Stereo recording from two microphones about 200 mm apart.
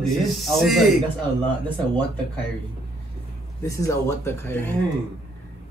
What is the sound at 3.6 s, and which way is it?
Speech, 15° left (ahead or behind).